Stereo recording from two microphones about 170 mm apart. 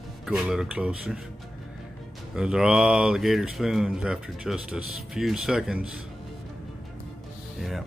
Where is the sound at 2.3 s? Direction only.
5° right (ahead or behind).